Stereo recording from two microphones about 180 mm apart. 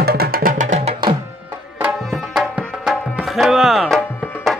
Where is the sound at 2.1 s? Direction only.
5° right (ahead or behind).